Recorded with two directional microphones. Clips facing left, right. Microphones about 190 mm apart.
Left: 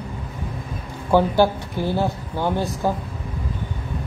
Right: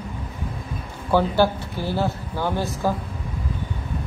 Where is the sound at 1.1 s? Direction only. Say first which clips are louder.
Left 2 dB; 15° left (ahead or behind).